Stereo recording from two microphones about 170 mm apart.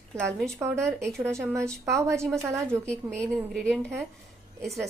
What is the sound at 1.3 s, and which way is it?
Speech, 15° right (ahead or behind).